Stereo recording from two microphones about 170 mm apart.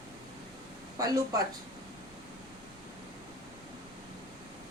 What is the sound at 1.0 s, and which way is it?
Speech, 20° right (ahead or behind).